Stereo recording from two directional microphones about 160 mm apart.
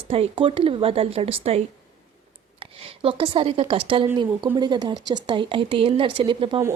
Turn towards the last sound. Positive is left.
turn(degrees=-30)  # may be behind; listen again after turning